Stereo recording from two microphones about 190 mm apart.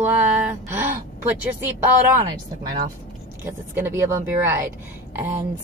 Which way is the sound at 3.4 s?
10° right (ahead or behind).